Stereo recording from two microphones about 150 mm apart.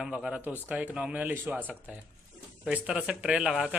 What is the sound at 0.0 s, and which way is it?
Speech, 5° right (ahead or behind).